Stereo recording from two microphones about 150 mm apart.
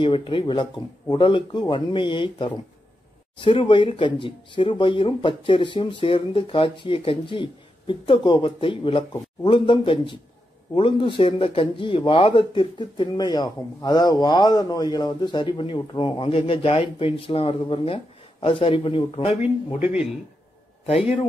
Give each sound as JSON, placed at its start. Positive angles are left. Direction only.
{"t": 0.0, "sound": "speech", "side_deg": 35}
{"t": 19.8, "sound": "speech", "side_deg": -5}